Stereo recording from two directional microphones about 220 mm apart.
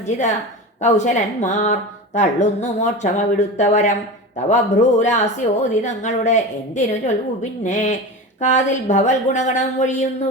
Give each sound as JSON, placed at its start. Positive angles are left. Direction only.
{"t": 0.8, "sound": "speech", "side_deg": 30}